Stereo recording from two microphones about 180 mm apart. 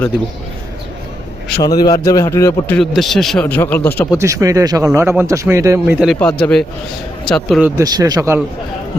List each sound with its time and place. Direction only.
1.6 s a man's voice: 20° left (ahead or behind)
2.7 s a man's voice: centre (ahead or behind)
4.2 s speech: 15° right (ahead or behind)
6.1 s a man's voice: 5° left (ahead or behind)
7.6 s a man's voice: 20° right (ahead or behind)